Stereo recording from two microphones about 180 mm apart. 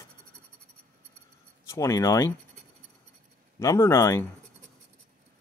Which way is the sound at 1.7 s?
15° left (ahead or behind).